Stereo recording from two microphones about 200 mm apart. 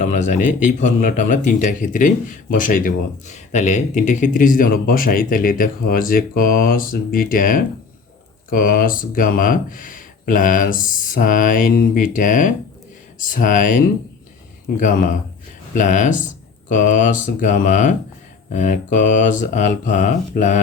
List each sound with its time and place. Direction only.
0.0 s speech: 40° left (ahead or behind)